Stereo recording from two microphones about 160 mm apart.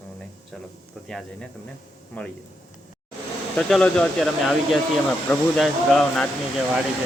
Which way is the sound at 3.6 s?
Centre (ahead or behind).